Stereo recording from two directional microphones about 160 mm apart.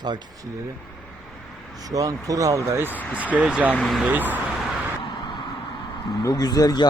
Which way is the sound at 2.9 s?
10° left (ahead or behind).